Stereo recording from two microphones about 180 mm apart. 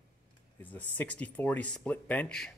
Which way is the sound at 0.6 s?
10° left (ahead or behind).